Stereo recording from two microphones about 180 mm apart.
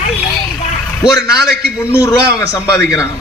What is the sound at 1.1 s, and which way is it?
A man's voice, 20° left (ahead or behind).